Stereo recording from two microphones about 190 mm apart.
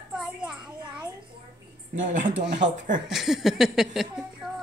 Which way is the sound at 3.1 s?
Centre (ahead or behind).